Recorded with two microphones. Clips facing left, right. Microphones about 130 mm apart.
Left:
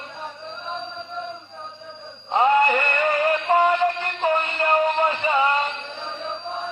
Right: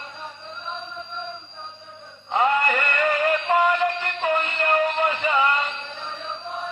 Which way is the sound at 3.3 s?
25° left (ahead or behind).